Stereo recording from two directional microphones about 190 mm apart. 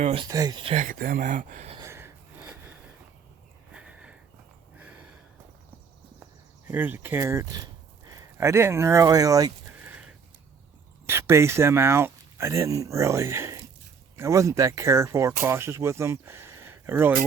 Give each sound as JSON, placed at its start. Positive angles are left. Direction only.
{"t": 0.0, "sound": "speech", "side_deg": -30}
{"t": 0.3, "sound": "speech", "side_deg": -20}
{"t": 0.9, "sound": "speech", "side_deg": -50}
{"t": 1.7, "sound": "wheeze", "side_deg": -15}
{"t": 3.7, "sound": "sniff", "side_deg": -5}
{"t": 6.7, "sound": "speech", "side_deg": -10}
{"t": 11.0, "sound": "speech", "side_deg": -15}